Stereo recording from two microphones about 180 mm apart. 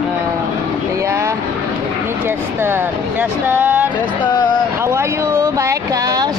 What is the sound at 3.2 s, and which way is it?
Speech, 10° right (ahead or behind).